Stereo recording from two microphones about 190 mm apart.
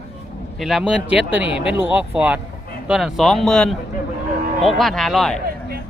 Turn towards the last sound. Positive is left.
turn(degrees=0)  # may be behind; listen again after turning